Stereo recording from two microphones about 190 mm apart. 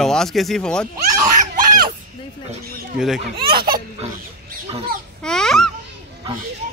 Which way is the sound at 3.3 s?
55° right (ahead or behind).